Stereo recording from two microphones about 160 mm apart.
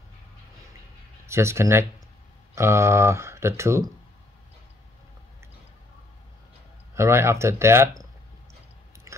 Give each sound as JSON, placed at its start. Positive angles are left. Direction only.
{"t": 1.2, "sound": "speech", "side_deg": -15}
{"t": 7.0, "sound": "speech", "side_deg": -15}